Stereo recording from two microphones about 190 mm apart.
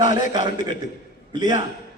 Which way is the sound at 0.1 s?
40° left (ahead or behind).